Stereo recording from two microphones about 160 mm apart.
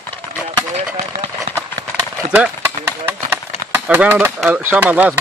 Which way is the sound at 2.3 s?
10° right (ahead or behind).